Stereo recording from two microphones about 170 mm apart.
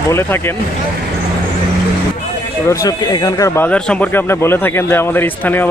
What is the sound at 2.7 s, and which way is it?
Speech, 20° left (ahead or behind).